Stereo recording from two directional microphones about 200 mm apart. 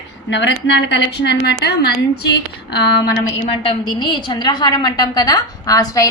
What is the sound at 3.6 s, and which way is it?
A woman's voice, 20° left (ahead or behind).